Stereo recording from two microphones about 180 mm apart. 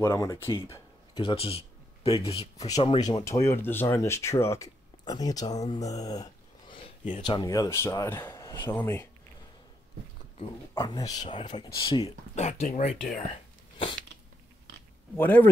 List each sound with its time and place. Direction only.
0.0 s speech: 15° left (ahead or behind)
1.1 s speech: 30° left (ahead or behind)
2.6 s speech: 20° left (ahead or behind)
10.8 s speech: 20° left (ahead or behind)
12.4 s speech: 45° left (ahead or behind)
15.1 s speech: 10° left (ahead or behind)